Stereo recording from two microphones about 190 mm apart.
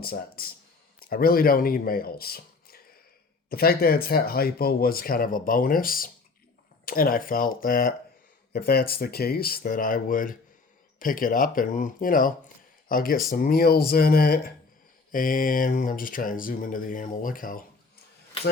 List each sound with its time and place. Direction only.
0.0 s speech: 50° left (ahead or behind)